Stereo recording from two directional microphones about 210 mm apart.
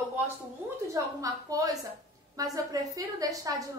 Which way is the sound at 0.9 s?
15° right (ahead or behind).